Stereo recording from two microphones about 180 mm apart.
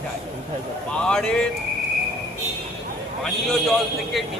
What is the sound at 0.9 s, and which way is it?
Speech, 5° left (ahead or behind).